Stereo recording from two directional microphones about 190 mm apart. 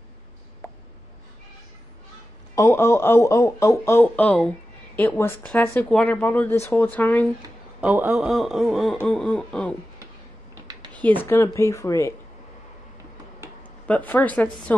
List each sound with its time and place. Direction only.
0.6 s a sound: 15° left (ahead or behind)
2.5 s speech: 15° left (ahead or behind)
7.8 s a man's voice: 10° right (ahead or behind)
10.9 s speech: 10° left (ahead or behind)
13.6 s a woman's voice: 10° left (ahead or behind)